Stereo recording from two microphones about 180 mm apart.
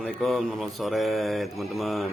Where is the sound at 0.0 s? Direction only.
Centre (ahead or behind).